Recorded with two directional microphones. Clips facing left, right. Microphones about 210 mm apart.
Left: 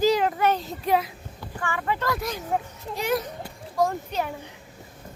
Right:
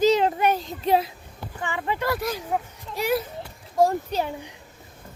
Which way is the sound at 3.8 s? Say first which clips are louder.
Right 4 dB; 30° right (ahead or behind).